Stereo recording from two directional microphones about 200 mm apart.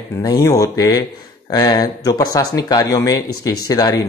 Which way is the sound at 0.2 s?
15° left (ahead or behind).